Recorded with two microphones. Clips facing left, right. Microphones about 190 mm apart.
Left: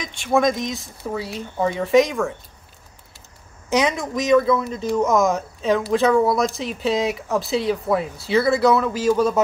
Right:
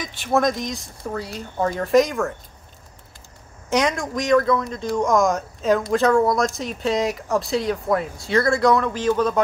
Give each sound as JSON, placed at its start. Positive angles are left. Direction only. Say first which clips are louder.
{"t": 0.0, "sound": "speech", "louder": "left 1 dB", "side_deg": 0}
{"t": 3.7, "sound": "speech", "louder": "left 1 dB", "side_deg": 5}